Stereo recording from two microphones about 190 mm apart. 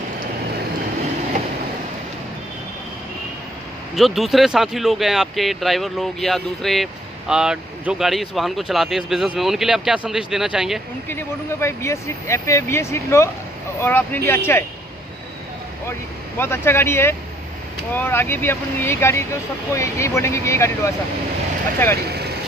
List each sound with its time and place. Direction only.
3.9 s speech: centre (ahead or behind)
11.1 s speech: 15° left (ahead or behind)
16.3 s speech: 10° left (ahead or behind)
22.0 s speech: 60° right (ahead or behind)